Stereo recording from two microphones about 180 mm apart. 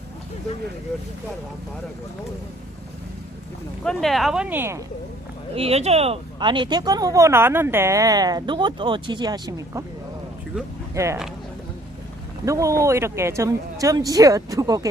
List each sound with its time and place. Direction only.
3.8 s speech: centre (ahead or behind)
5.5 s speech: 35° right (ahead or behind); by 9.8 s 20° right (ahead or behind)
10.9 s speech: 15° right (ahead or behind)
12.5 s speech: 15° right (ahead or behind)